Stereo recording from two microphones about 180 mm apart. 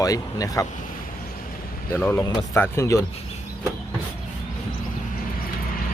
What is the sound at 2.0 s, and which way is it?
Speech, 10° left (ahead or behind).